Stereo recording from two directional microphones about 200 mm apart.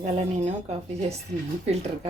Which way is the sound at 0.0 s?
30° right (ahead or behind).